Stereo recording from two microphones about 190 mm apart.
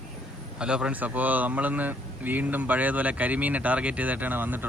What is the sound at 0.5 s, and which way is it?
Speech, 5° right (ahead or behind).